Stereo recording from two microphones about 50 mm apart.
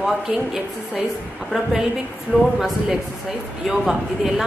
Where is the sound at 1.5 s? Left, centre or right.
Centre.